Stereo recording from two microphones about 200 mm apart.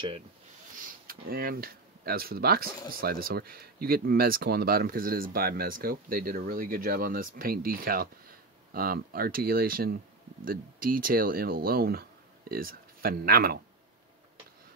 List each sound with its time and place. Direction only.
0.7 s speech: 45° right (ahead or behind)